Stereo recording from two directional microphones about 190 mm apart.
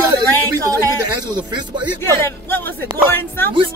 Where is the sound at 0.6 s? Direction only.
20° right (ahead or behind).